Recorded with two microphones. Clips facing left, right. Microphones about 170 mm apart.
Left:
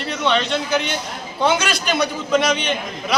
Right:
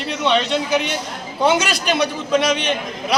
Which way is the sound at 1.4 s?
40° right (ahead or behind).